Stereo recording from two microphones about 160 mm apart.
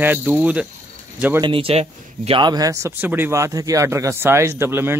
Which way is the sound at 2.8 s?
10° right (ahead or behind).